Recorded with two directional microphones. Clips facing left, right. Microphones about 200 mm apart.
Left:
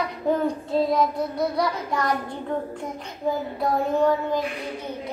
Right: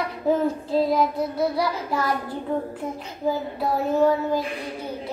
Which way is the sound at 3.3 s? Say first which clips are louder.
Right 1 dB; 5° right (ahead or behind).